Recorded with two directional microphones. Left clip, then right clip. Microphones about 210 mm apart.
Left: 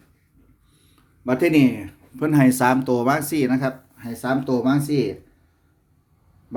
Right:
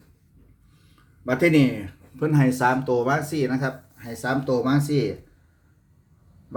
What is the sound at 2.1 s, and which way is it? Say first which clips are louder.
Speech: left 4 dB; 50° left (ahead or behind).